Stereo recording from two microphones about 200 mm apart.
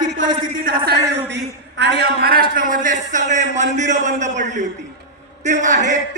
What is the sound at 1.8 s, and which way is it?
A man's voice, 55° right (ahead or behind).